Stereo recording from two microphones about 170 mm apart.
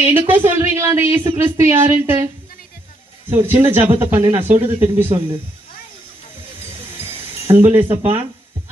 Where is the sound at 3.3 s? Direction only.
15° right (ahead or behind).